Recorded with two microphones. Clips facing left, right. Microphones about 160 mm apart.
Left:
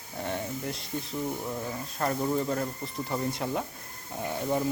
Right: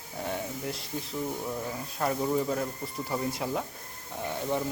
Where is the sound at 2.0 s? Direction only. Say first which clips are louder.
Even; 5° right (ahead or behind).